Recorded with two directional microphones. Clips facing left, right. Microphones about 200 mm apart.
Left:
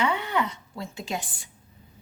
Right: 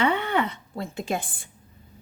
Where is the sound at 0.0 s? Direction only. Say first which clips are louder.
Right 3 dB; 55° right (ahead or behind).